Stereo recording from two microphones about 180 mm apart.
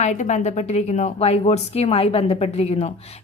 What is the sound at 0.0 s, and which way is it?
A woman's voice, 40° left (ahead or behind).